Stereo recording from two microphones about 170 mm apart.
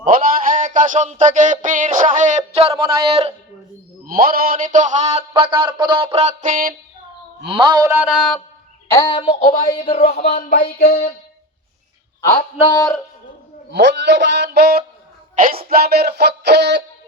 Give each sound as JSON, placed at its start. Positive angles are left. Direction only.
{"t": 0.0, "sound": "a sound", "side_deg": -55}
{"t": 2.7, "sound": "speech", "side_deg": -25}
{"t": 3.1, "sound": "a man's voice", "side_deg": -35}
{"t": 4.0, "sound": "a sound", "side_deg": -60}
{"t": 7.6, "sound": "a sound", "side_deg": -20}
{"t": 9.0, "sound": "a man's voice", "side_deg": 30}
{"t": 10.8, "sound": "speech", "side_deg": 60}
{"t": 12.4, "sound": "a man's voice", "side_deg": 30}
{"t": 13.7, "sound": "a man's voice", "side_deg": -90}
{"t": 15.4, "sound": "speech", "side_deg": -60}